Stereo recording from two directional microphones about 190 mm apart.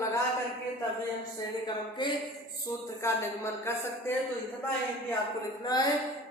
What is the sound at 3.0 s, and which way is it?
Speech, 15° left (ahead or behind).